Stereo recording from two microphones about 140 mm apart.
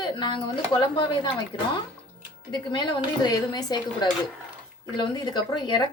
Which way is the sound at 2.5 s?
30° left (ahead or behind).